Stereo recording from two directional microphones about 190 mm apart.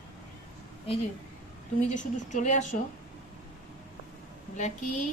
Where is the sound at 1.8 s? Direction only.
40° left (ahead or behind).